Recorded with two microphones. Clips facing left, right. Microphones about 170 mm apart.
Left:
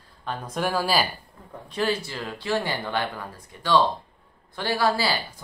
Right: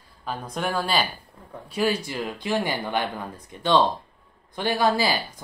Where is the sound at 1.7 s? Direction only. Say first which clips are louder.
Right 2 dB; 10° right (ahead or behind).